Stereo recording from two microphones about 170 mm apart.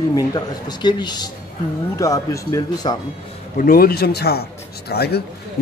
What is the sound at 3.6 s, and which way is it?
A man's voice, 60° left (ahead or behind).